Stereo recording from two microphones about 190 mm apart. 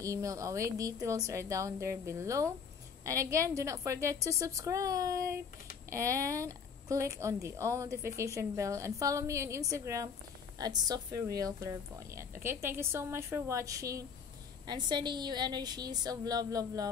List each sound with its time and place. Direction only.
0.0 s a woman's voice: 15° right (ahead or behind)